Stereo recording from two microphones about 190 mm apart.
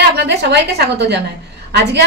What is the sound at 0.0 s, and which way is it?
A woman's voice, 60° right (ahead or behind).